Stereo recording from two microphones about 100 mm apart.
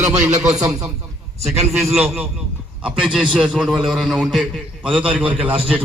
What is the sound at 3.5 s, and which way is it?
Speech, centre (ahead or behind).